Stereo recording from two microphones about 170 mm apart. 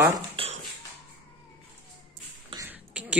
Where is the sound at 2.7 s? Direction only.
5° right (ahead or behind).